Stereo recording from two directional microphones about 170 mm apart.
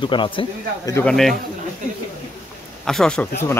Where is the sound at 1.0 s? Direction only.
Centre (ahead or behind).